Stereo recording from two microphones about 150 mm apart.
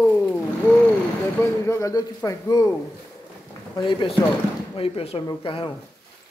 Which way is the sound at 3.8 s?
35° left (ahead or behind).